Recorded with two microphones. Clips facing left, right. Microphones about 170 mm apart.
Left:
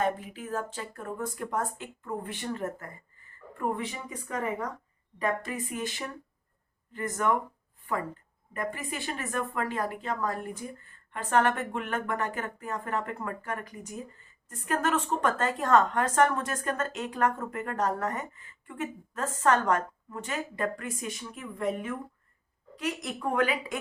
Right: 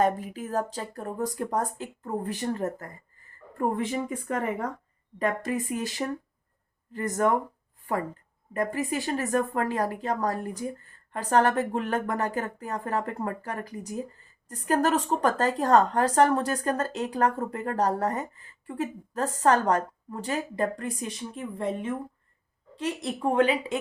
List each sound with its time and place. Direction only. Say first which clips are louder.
0.0 s a woman's voice: right 5 dB; 40° right (ahead or behind)
8.5 s a woman's voice: right 7 dB; 40° right (ahead or behind)